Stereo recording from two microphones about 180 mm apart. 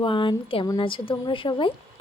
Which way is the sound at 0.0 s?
30° left (ahead or behind).